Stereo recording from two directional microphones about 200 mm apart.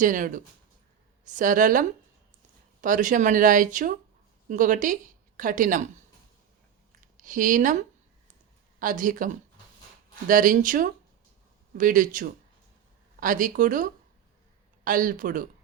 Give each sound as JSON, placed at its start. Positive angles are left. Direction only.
{"t": 0.0, "sound": "a woman's voice", "side_deg": -40}
{"t": 7.2, "sound": "speech", "side_deg": -40}